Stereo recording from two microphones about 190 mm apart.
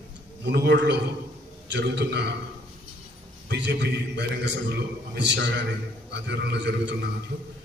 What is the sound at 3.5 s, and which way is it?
A man's voice, 65° right (ahead or behind).